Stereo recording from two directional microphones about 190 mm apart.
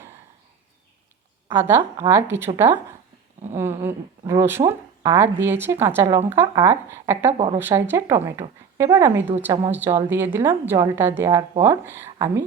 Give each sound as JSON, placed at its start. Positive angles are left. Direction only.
{"t": 1.5, "sound": "speech", "side_deg": -15}
{"t": 3.5, "sound": "speech", "side_deg": -10}
{"t": 7.3, "sound": "speech", "side_deg": -35}
{"t": 7.6, "sound": "speech", "side_deg": -10}